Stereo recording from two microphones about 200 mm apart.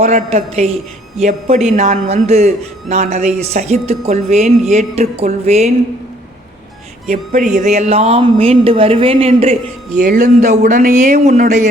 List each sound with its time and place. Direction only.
0.0 s speech: 35° right (ahead or behind)
7.1 s speech: 35° right (ahead or behind)
10.0 s speech: 40° right (ahead or behind)